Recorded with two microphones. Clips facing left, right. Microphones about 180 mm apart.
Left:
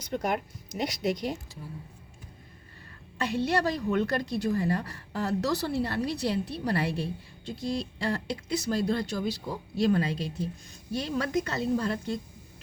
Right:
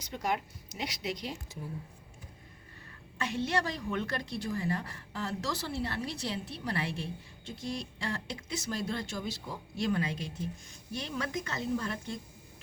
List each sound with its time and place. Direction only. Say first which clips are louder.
0.1 s speech: left 4 dB; 55° left (ahead or behind)
3.3 s a woman's voice: left 5 dB; 35° left (ahead or behind)